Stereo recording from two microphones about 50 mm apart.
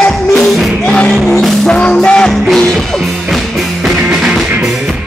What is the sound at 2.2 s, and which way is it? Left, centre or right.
Music, centre.